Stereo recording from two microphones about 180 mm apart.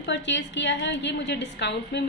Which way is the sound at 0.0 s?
80° left.